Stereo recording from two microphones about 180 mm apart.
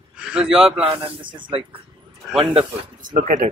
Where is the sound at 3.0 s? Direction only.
50° right (ahead or behind).